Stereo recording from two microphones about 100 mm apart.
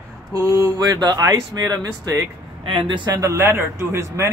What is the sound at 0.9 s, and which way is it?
A man's voice, 40° right (ahead or behind).